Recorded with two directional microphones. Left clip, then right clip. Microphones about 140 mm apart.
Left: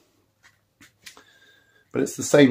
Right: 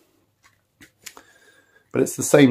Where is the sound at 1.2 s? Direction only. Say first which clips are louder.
Right 4 dB; 35° right (ahead or behind).